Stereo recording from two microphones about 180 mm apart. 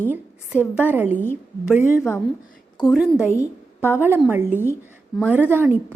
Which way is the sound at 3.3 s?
15° left (ahead or behind).